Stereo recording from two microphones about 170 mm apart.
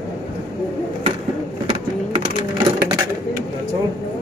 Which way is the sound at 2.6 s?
25° right (ahead or behind).